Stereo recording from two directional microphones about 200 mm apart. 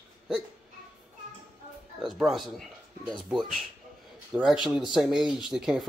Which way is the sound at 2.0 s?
Centre (ahead or behind).